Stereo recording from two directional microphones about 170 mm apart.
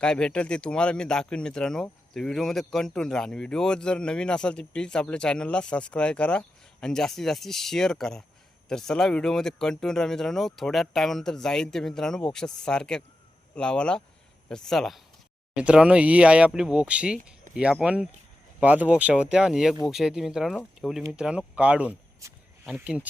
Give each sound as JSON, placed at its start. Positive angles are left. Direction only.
{"t": 0.0, "sound": "speech", "side_deg": 5}
{"t": 22.2, "sound": "a sound", "side_deg": -20}
{"t": 22.6, "sound": "speech", "side_deg": -5}